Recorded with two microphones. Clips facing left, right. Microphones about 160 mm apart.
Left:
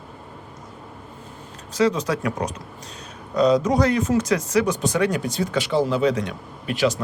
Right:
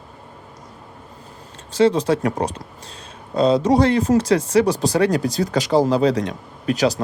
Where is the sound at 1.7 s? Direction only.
30° right (ahead or behind).